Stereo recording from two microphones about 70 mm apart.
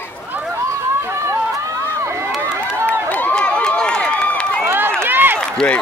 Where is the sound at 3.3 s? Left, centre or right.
Centre.